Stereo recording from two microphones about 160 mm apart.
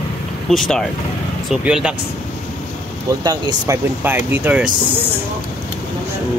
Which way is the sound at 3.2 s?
25° right (ahead or behind).